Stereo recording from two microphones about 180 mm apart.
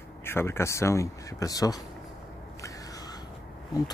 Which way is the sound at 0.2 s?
15° left (ahead or behind).